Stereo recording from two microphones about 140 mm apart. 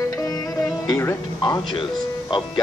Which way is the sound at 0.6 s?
10° left (ahead or behind).